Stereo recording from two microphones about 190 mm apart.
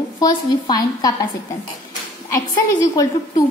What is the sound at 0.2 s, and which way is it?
Speech, 20° left (ahead or behind).